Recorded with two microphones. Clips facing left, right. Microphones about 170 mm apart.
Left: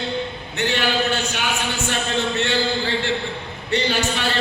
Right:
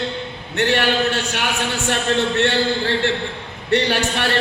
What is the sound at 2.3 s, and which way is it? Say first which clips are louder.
A man's voice: right 3 dB; 70° right (ahead or behind).